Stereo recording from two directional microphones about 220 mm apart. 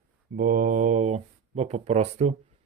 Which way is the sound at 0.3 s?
40° right (ahead or behind).